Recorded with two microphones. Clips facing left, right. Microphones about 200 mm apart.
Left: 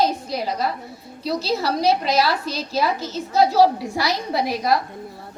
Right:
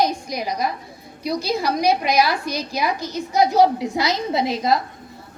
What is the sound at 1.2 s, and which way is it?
A woman's voice, 15° right (ahead or behind).